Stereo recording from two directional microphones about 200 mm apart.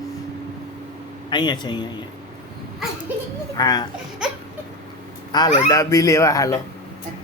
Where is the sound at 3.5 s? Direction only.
20° left (ahead or behind).